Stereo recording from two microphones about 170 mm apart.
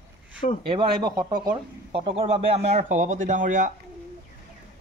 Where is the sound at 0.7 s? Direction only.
30° right (ahead or behind); by 3.7 s 50° right (ahead or behind).